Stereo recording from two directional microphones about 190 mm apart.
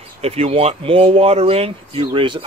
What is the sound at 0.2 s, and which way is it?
Speech, 30° right (ahead or behind).